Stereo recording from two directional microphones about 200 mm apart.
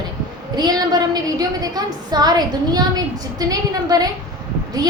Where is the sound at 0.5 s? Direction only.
20° right (ahead or behind).